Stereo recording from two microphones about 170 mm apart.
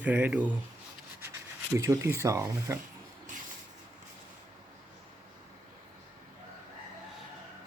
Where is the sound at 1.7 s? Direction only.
15° right (ahead or behind).